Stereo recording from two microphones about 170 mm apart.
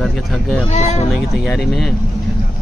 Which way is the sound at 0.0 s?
Centre (ahead or behind).